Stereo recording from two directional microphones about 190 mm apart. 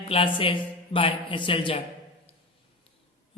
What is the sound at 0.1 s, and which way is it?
A man's voice, 30° left (ahead or behind).